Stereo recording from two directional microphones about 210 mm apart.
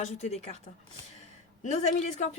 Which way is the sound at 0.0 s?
30° left (ahead or behind).